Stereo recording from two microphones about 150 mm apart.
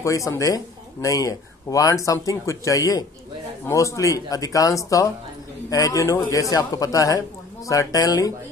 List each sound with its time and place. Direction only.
0.0 s a man's voice: 20° left (ahead or behind)